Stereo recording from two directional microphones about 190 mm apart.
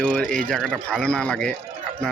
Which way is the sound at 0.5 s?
5° left (ahead or behind).